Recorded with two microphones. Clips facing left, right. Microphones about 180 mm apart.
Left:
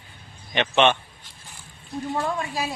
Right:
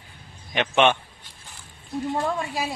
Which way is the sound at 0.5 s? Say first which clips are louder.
Even; 10° right (ahead or behind).